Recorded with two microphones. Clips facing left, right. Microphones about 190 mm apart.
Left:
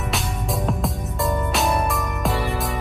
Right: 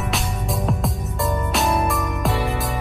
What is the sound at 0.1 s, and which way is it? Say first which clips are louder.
Music: even; centre (ahead or behind).